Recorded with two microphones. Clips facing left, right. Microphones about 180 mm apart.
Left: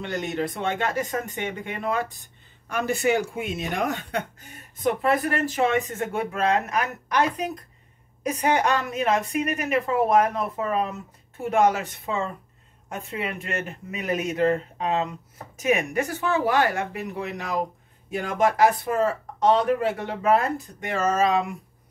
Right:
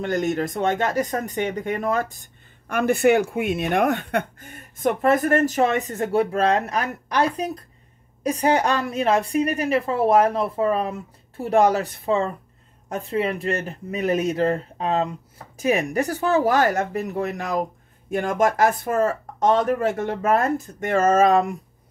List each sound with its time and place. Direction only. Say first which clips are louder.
0.0 s speech: right 5 dB; 45° right (ahead or behind)
2.7 s speech: right 5 dB; 55° right (ahead or behind)